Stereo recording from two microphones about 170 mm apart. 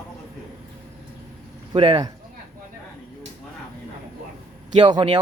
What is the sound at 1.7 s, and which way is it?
Speech, 30° right (ahead or behind).